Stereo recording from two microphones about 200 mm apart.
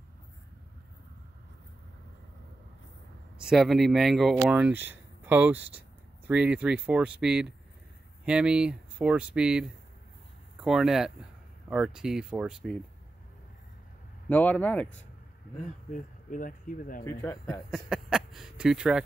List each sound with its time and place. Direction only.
3.4 s speech: centre (ahead or behind)
14.3 s speech: 10° left (ahead or behind)
15.9 s speech: 40° left (ahead or behind)
17.0 s speech: 15° left (ahead or behind)
17.6 s a sound: 5° right (ahead or behind)